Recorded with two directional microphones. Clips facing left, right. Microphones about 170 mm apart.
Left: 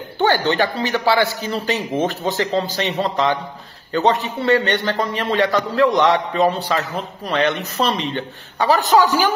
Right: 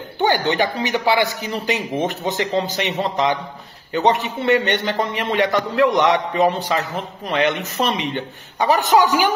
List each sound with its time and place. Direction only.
0.2 s a man's voice: 15° right (ahead or behind)